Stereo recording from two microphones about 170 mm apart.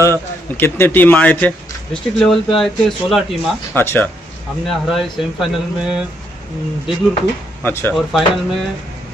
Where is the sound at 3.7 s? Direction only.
15° left (ahead or behind).